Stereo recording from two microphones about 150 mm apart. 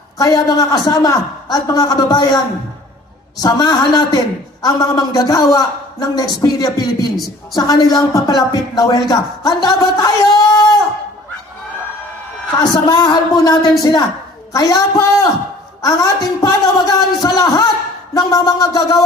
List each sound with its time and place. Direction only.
0.2 s a man's voice: 25° left (ahead or behind)
12.8 s a man's voice: 25° left (ahead or behind)